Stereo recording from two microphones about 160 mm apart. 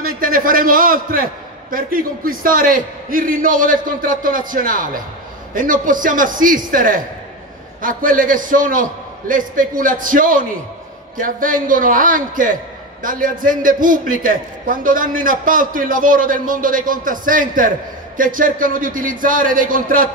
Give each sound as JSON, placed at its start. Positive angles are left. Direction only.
{"t": 0.0, "sound": "a man's voice", "side_deg": -60}